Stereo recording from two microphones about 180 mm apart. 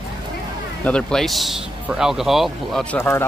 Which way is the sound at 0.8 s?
5° left (ahead or behind).